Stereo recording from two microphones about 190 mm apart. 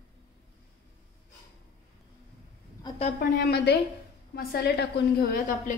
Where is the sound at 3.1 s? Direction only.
60° left (ahead or behind).